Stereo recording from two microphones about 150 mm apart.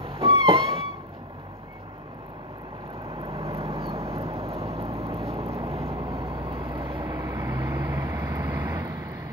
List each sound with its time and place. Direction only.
0.0 s music: 40° right (ahead or behind)
3.2 s vehicle: 40° right (ahead or behind)
7.1 s vehicle: 25° right (ahead or behind)